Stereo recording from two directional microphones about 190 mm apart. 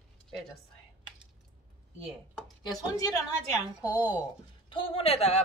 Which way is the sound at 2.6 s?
20° left (ahead or behind).